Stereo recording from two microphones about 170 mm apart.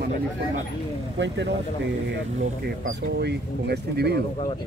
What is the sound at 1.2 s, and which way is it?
Speech, 90° right.